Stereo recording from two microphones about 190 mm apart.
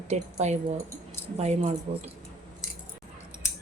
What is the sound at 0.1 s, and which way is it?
A woman's voice, 35° right (ahead or behind).